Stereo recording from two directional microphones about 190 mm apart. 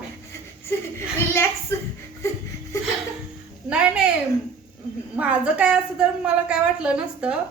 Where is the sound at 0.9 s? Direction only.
15° left (ahead or behind).